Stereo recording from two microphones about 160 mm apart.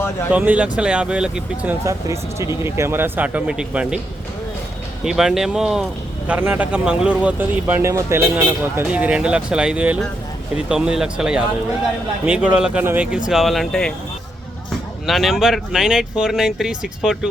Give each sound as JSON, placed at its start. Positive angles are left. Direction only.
{"t": 0.3, "sound": "speech", "side_deg": -10}
{"t": 1.8, "sound": "speech", "side_deg": -20}
{"t": 5.0, "sound": "speech", "side_deg": 0}
{"t": 15.0, "sound": "speech", "side_deg": 0}